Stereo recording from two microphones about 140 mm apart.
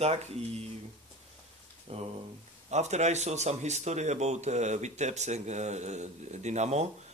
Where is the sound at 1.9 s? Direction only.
45° right (ahead or behind).